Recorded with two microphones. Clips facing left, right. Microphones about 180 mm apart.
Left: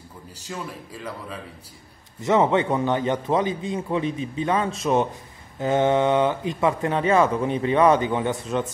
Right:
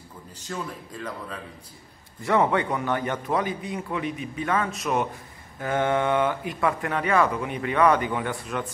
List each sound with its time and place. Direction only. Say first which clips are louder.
0.5 s speech: right 1 dB; 10° left (ahead or behind)
2.2 s speech: left 3 dB; 20° left (ahead or behind)